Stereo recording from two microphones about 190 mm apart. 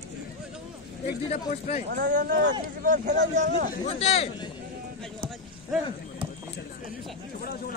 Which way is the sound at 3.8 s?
30° left (ahead or behind).